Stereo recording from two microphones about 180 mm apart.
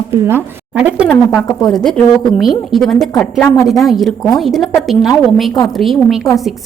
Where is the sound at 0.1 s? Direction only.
15° right (ahead or behind).